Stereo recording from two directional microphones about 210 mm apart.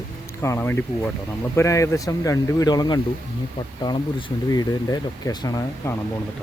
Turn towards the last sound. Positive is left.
turn(degrees=15)  # may be behind; listen again after turning